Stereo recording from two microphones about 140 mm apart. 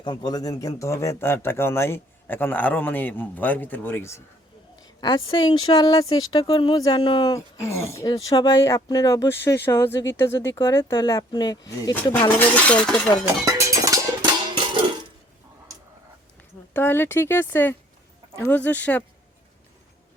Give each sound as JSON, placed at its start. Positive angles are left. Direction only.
{"t": 0.0, "sound": "a man's voice", "side_deg": 35}
{"t": 4.8, "sound": "a woman's voice", "side_deg": 30}
{"t": 12.4, "sound": "a man's voice", "side_deg": 10}
{"t": 13.4, "sound": "cowbell", "side_deg": -25}
{"t": 14.5, "sound": "music", "side_deg": -35}
{"t": 16.7, "sound": "a man's voice", "side_deg": 15}